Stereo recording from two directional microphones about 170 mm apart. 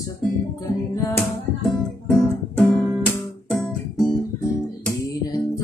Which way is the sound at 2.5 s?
5° left (ahead or behind).